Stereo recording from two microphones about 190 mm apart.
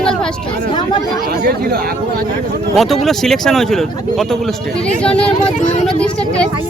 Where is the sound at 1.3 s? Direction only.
55° right (ahead or behind).